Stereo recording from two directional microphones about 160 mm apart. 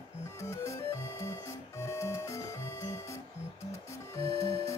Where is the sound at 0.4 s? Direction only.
20° left (ahead or behind).